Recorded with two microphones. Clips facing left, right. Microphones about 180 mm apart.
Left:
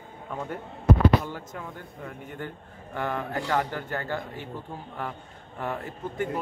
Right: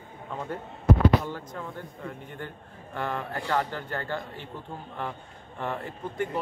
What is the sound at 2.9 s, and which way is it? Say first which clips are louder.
A man's voice: left 2 dB; 10° left (ahead or behind).